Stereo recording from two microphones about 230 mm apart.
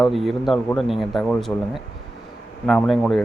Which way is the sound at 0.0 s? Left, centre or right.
Centre.